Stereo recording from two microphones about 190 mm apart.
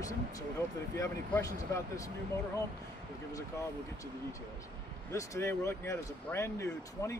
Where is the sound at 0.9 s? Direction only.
15° left (ahead or behind).